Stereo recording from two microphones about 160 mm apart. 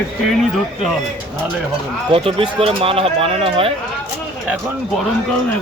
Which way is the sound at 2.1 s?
35° right (ahead or behind).